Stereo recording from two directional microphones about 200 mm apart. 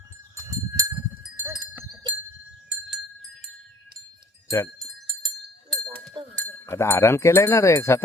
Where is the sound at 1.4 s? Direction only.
10° right (ahead or behind).